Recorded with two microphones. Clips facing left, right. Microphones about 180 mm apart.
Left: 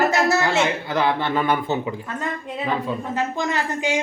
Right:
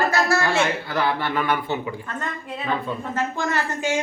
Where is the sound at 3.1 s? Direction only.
15° left (ahead or behind).